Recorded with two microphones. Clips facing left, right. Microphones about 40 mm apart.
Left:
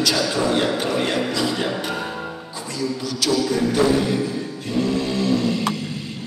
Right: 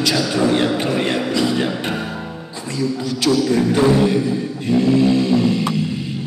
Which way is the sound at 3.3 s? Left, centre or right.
Right.